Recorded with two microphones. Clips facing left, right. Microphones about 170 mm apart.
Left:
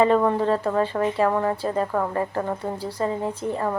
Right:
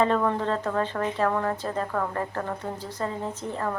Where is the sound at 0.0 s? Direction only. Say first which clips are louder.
Left 5 dB; 10° left (ahead or behind).